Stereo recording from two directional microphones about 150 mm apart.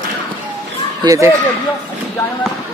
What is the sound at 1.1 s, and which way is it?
Speech, 20° right (ahead or behind).